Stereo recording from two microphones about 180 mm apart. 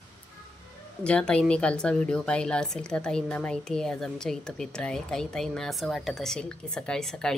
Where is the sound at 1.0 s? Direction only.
5° left (ahead or behind).